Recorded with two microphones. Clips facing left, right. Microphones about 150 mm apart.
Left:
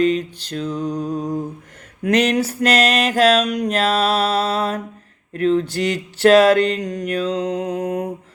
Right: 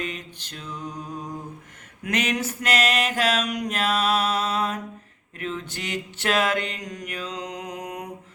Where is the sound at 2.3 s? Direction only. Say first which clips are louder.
Left 8 dB; 35° left (ahead or behind).